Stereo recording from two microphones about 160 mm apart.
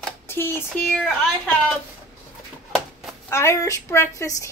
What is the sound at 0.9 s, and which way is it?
Speech, centre (ahead or behind).